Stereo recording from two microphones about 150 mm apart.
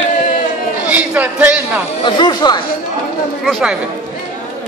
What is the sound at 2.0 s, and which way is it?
Speech, 30° left (ahead or behind).